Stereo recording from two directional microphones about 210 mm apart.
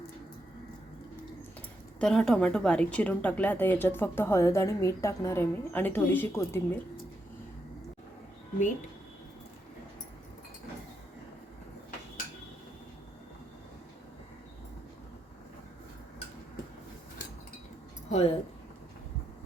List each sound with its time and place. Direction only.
2.0 s a woman's voice: 5° left (ahead or behind)
18.1 s speech: 30° left (ahead or behind)